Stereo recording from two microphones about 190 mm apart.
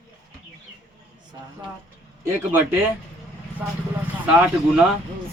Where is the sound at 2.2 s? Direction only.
10° right (ahead or behind).